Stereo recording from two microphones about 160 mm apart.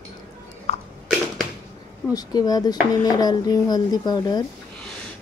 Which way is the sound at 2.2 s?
25° left (ahead or behind).